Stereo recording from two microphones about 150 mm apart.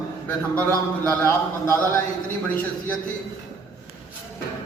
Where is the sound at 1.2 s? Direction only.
15° left (ahead or behind).